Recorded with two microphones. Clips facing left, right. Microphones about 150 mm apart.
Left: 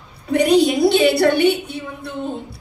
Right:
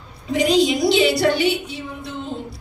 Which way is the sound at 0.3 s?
60° left (ahead or behind).